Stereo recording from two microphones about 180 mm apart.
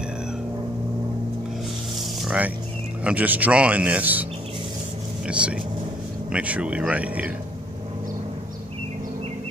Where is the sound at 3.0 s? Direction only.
10° right (ahead or behind).